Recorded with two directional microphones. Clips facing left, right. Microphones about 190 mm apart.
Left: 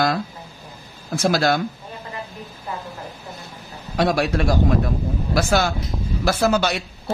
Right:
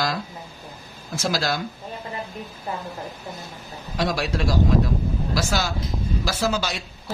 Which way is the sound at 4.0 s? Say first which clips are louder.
Left 5 dB; 55° left (ahead or behind).